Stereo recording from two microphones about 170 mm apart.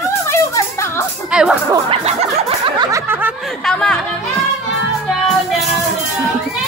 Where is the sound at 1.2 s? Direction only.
5° right (ahead or behind).